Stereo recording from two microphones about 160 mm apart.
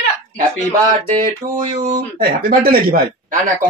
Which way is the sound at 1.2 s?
50° right (ahead or behind).